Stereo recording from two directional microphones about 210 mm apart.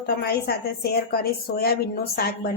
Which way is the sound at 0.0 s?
50° left (ahead or behind).